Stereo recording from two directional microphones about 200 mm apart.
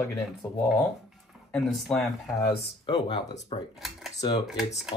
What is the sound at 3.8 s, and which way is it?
Cutlery, centre (ahead or behind).